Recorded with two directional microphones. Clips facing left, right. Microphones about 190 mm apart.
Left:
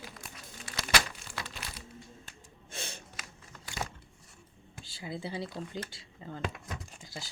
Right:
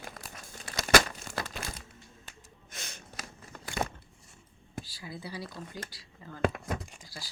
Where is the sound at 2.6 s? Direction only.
30° left (ahead or behind).